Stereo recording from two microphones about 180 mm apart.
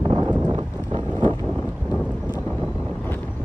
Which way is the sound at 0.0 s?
20° right (ahead or behind).